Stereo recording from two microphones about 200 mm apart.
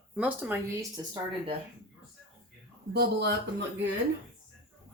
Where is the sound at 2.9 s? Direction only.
55° right (ahead or behind).